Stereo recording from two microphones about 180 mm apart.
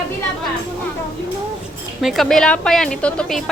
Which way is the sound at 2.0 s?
Centre (ahead or behind).